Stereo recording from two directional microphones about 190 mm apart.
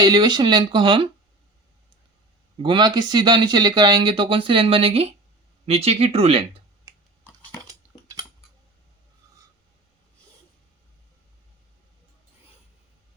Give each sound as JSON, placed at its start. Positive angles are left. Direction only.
{"t": 0.0, "sound": "speech", "side_deg": -20}
{"t": 2.6, "sound": "speech", "side_deg": -25}
{"t": 7.7, "sound": "cutlery", "side_deg": -20}